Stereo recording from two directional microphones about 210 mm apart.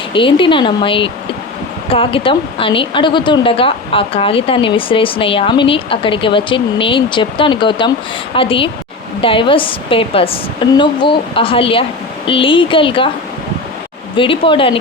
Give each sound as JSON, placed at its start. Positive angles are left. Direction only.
{"t": 0.1, "sound": "speech", "side_deg": 25}
{"t": 14.2, "sound": "speech", "side_deg": 25}